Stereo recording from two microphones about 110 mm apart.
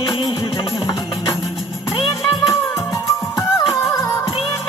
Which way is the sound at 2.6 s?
25° left (ahead or behind).